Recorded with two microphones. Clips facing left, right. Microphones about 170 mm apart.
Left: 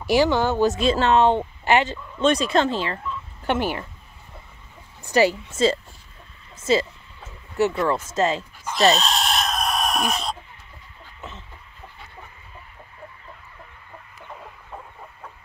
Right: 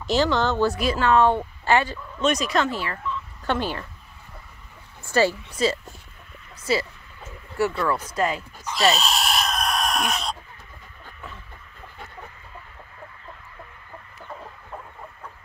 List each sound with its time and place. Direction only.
0.0 s speech: 10° left (ahead or behind)
2.2 s speech: 30° left (ahead or behind)
5.0 s speech: 15° left (ahead or behind)
8.9 s chicken: 5° right (ahead or behind)
11.1 s a sound: 20° left (ahead or behind)